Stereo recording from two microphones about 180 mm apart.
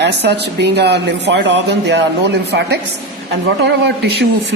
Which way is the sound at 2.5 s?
65° right (ahead or behind).